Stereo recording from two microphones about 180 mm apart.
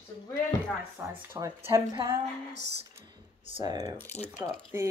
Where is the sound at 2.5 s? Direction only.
70° right (ahead or behind).